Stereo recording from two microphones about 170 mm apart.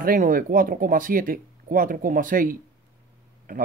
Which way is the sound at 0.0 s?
50° right (ahead or behind).